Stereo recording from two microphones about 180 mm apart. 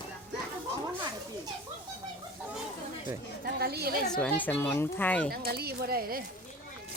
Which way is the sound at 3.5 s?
60° right (ahead or behind).